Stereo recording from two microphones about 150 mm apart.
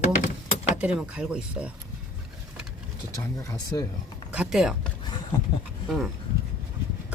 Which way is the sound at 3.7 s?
25° left (ahead or behind).